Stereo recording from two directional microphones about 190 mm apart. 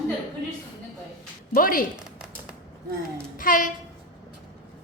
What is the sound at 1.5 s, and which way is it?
Speech, 45° left (ahead or behind).